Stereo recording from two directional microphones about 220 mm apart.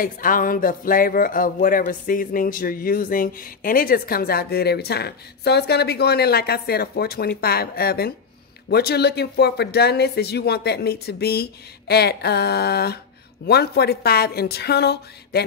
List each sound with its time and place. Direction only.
0.0 s speech: 40° left (ahead or behind)